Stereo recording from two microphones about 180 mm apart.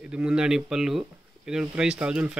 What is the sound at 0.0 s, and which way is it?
Speech, 5° right (ahead or behind).